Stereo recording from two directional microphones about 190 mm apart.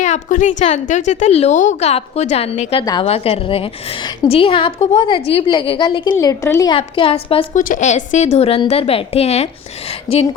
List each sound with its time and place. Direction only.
0.0 s a woman's voice: 40° left (ahead or behind)
2.8 s a woman's voice: 20° left (ahead or behind)
3.1 s a woman's voice: 30° left (ahead or behind)
7.6 s a woman's voice: 40° left (ahead or behind)